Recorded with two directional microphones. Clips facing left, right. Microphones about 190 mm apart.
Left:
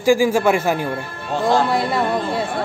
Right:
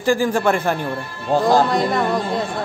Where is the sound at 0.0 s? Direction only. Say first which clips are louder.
Left 3 dB; 10° left (ahead or behind).